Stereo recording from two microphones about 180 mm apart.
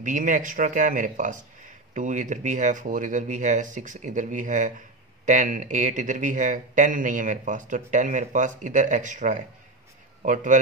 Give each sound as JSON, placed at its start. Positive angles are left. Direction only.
{"t": 0.0, "sound": "speech", "side_deg": -45}